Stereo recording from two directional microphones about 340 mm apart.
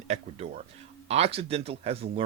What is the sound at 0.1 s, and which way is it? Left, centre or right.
Speech, centre.